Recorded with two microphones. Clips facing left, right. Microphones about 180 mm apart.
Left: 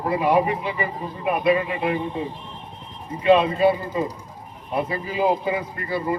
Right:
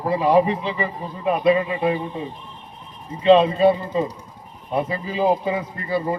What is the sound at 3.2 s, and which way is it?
Speech, 25° right (ahead or behind).